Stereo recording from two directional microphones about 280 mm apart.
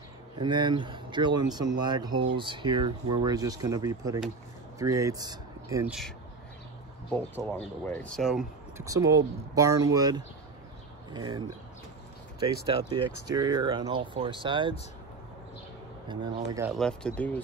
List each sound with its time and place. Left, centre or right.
0.4 s speech: centre
7.1 s speech: centre
8.8 s speech: centre
12.6 s speech: centre
16.1 s speech: centre
16.7 s speech: centre